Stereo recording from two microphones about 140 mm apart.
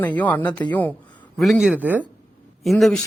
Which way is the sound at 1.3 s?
Centre (ahead or behind).